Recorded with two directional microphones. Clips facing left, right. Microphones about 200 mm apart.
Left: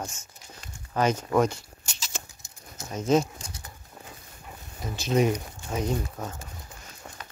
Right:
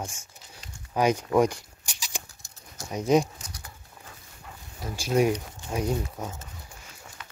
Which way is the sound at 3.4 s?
25° left (ahead or behind).